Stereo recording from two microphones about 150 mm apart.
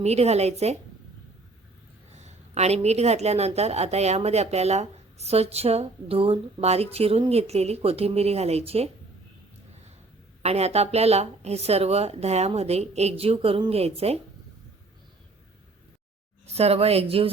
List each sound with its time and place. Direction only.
0.0 s speech: 45° right (ahead or behind)
2.1 s speech: 50° right (ahead or behind)
10.4 s speech: 45° right (ahead or behind)
16.5 s speech: 45° right (ahead or behind)